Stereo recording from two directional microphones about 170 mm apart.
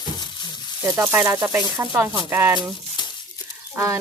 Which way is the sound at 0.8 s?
10° right (ahead or behind).